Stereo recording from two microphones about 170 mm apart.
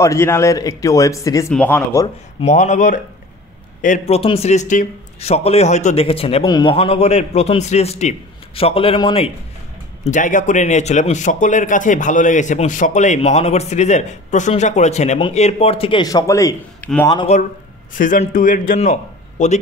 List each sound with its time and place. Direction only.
0.0 s speech: 15° left (ahead or behind)
1.5 s speech: 10° left (ahead or behind)
2.4 s a man's voice: 45° left (ahead or behind)
10.0 s a man's voice: 50° left (ahead or behind); by 17.1 s 15° left (ahead or behind)
17.3 s a man's voice: 40° left (ahead or behind)
17.9 s a man's voice: 50° left (ahead or behind)